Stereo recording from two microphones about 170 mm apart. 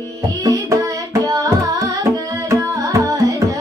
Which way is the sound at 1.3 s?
20° right (ahead or behind).